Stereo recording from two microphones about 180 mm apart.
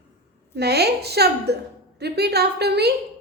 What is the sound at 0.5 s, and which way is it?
A woman's voice, 65° right (ahead or behind).